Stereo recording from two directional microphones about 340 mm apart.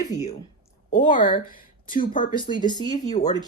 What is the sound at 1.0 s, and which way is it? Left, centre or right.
Speech, left.